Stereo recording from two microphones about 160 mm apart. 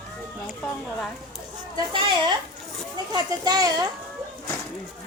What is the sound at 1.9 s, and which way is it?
A child's voice, 30° right (ahead or behind).